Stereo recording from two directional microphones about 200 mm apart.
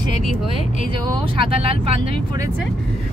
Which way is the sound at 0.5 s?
40° left (ahead or behind).